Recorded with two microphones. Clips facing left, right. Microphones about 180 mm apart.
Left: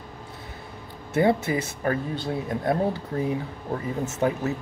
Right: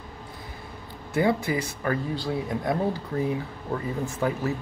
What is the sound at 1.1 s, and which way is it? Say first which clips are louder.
Speech: left 2 dB; 25° left (ahead or behind).